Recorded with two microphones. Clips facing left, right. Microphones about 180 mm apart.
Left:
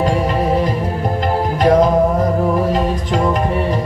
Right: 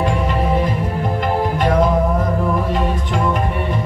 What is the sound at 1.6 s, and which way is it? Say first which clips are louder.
Music: left 6 dB; 40° left (ahead or behind).